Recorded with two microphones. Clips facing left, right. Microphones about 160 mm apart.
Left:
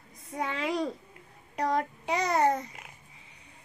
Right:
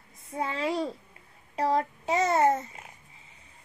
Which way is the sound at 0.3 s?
30° right (ahead or behind).